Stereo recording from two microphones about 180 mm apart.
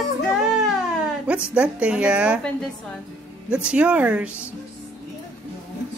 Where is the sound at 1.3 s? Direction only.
5° right (ahead or behind).